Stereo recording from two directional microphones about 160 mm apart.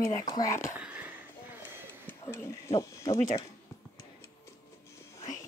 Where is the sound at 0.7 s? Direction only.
10° right (ahead or behind).